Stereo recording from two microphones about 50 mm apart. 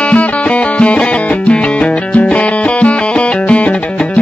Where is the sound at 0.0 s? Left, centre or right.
Left.